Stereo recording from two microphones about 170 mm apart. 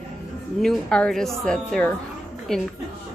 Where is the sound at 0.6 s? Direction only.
5° left (ahead or behind).